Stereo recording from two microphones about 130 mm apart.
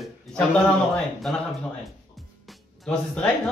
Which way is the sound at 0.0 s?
Centre (ahead or behind).